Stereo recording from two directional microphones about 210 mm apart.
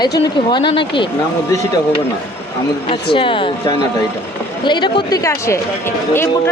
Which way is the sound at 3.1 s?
25° left (ahead or behind).